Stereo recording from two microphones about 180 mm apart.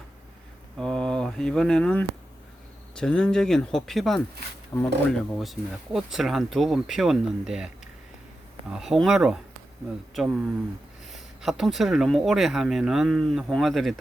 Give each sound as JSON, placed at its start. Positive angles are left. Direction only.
{"t": 0.8, "sound": "mantra", "side_deg": 5}
{"t": 2.9, "sound": "speech", "side_deg": 5}
{"t": 4.7, "sound": "speech", "side_deg": 15}
{"t": 5.4, "sound": "speech", "side_deg": 0}
{"t": 8.7, "sound": "speech", "side_deg": 0}